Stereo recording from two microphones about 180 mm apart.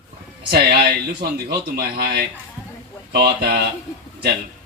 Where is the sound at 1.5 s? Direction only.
60° right (ahead or behind).